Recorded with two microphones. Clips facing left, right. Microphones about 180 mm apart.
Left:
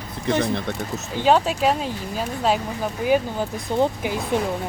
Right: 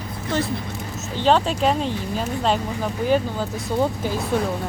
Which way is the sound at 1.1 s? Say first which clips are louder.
Even; 10° left (ahead or behind).